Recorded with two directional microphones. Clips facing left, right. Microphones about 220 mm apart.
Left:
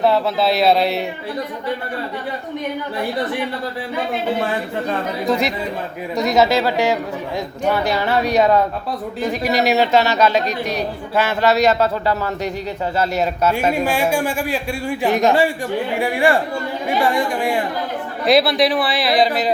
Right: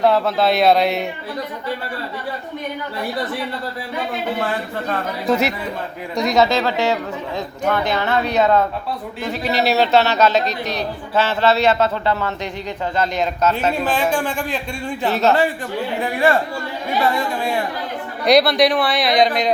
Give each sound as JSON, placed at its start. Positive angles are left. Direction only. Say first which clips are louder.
{"t": 0.0, "sound": "speech", "louder": "even", "side_deg": 0}
{"t": 5.3, "sound": "a man's voice", "louder": "right 2 dB", "side_deg": -5}
{"t": 18.3, "sound": "speech", "louder": "right 1 dB", "side_deg": 0}